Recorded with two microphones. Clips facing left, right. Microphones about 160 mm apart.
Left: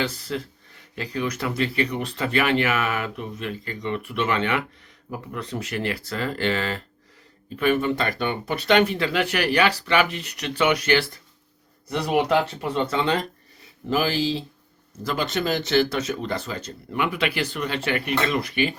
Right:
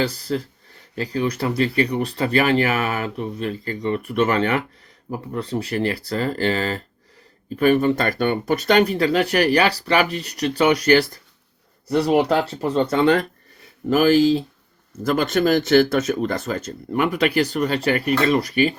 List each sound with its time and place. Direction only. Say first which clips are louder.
0.0 s speech: right 5 dB; 35° right (ahead or behind)
12.9 s speech: right 6 dB; 55° right (ahead or behind); by 18.7 s 40° right (ahead or behind)